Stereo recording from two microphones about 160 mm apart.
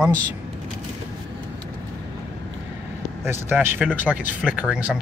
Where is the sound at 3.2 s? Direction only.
15° right (ahead or behind).